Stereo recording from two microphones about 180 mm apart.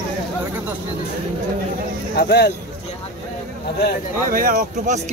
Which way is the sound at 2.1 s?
65° left (ahead or behind).